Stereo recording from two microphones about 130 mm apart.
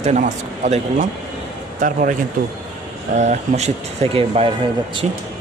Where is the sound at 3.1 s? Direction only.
70° right (ahead or behind); by 4.5 s 50° right (ahead or behind).